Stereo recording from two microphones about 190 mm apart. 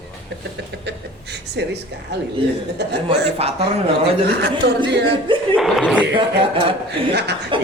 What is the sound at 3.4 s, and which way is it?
Speech, 30° right (ahead or behind).